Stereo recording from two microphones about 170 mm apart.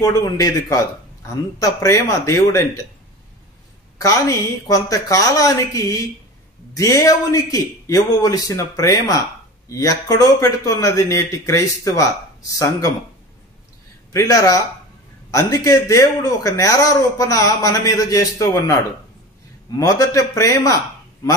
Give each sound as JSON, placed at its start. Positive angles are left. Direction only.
{"t": 0.0, "sound": "a man's voice", "side_deg": 20}
{"t": 4.0, "sound": "a man's voice", "side_deg": 20}
{"t": 14.1, "sound": "a man's voice", "side_deg": 20}